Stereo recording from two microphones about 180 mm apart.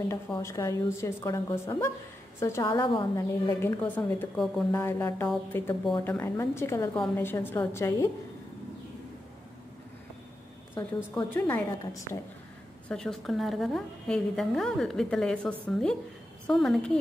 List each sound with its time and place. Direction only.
0.1 s a woman's voice: 15° left (ahead or behind)
10.7 s a woman's voice: 10° left (ahead or behind)
12.8 s a woman's voice: 5° left (ahead or behind)